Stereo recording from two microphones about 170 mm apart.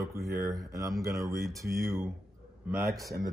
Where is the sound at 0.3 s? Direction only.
20° right (ahead or behind).